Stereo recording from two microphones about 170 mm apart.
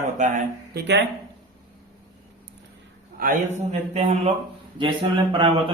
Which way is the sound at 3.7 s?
45° right (ahead or behind).